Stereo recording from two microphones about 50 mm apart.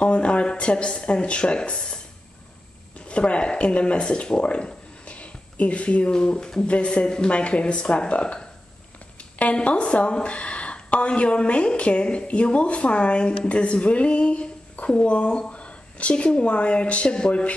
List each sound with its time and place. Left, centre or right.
0.0 s speech: left
3.1 s a woman's voice: left